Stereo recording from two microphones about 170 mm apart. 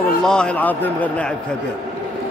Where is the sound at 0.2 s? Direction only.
5° left (ahead or behind).